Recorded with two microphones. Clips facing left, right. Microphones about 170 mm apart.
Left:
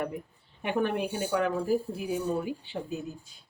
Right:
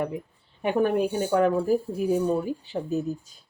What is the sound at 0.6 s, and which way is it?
A woman's voice, 45° right (ahead or behind).